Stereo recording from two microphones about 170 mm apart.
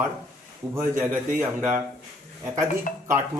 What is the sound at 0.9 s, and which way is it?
Speech, 10° right (ahead or behind).